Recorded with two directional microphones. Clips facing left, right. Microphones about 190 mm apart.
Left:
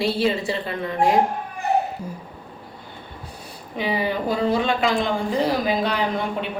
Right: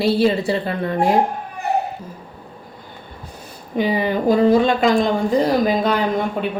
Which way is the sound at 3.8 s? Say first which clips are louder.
Right 5 dB; 45° right (ahead or behind).